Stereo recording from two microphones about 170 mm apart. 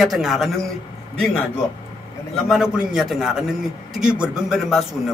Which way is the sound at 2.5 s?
Centre (ahead or behind).